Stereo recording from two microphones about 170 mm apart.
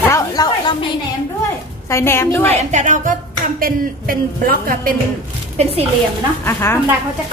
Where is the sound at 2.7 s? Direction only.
45° right (ahead or behind).